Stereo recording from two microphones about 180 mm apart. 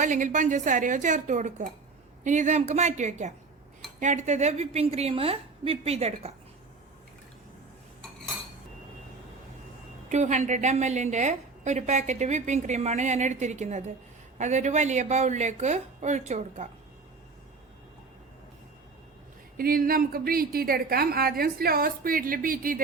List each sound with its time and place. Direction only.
0.0 s a woman's voice: 45° right (ahead or behind)
10.1 s a woman's voice: 40° right (ahead or behind)
19.5 s a woman's voice: 55° right (ahead or behind)